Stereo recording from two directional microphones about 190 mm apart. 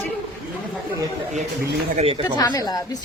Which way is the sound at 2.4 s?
20° left (ahead or behind).